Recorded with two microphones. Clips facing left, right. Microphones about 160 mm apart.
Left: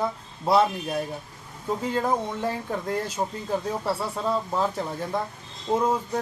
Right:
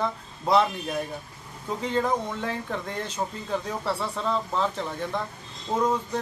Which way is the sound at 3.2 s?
25° left (ahead or behind).